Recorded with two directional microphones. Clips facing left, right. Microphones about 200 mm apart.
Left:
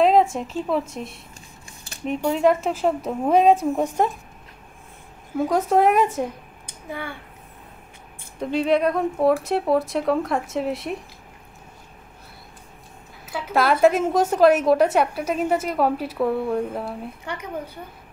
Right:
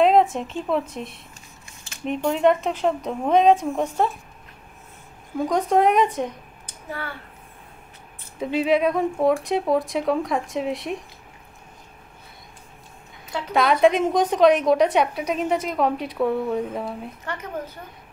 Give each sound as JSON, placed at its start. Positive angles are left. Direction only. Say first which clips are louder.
{"t": 0.0, "sound": "a woman's voice", "louder": "even", "side_deg": 0}
{"t": 5.4, "sound": "a woman's voice", "louder": "left 1 dB", "side_deg": 5}
{"t": 8.4, "sound": "a woman's voice", "louder": "even", "side_deg": -5}
{"t": 13.2, "sound": "a woman's voice", "louder": "even", "side_deg": 5}